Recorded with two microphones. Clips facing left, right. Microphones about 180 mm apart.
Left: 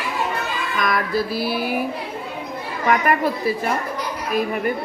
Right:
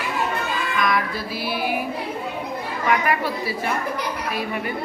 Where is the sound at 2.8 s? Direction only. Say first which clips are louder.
Left 3 dB; 50° left (ahead or behind).